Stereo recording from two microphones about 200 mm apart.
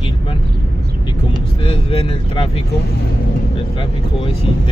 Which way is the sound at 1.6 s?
25° left (ahead or behind).